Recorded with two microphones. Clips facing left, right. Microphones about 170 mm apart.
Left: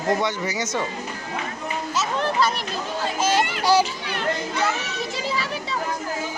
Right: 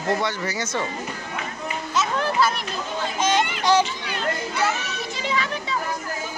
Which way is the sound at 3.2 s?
5° left (ahead or behind).